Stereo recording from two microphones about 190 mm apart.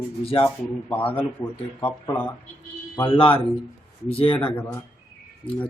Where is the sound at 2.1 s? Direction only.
10° left (ahead or behind).